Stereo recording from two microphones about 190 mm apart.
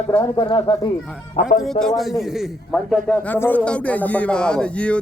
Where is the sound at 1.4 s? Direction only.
40° left (ahead or behind).